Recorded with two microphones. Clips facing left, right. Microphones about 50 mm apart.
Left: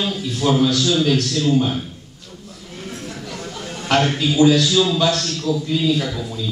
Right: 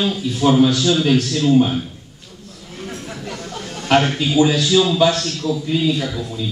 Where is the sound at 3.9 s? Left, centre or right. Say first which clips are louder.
Right 2 dB; centre.